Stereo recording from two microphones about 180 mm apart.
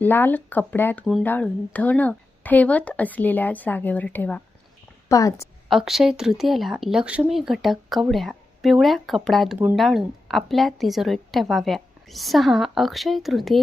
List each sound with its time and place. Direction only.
0.0 s a woman's voice: 10° left (ahead or behind)
5.6 s speech: centre (ahead or behind)